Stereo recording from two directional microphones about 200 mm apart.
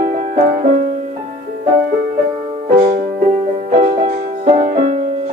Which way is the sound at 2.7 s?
40° right (ahead or behind).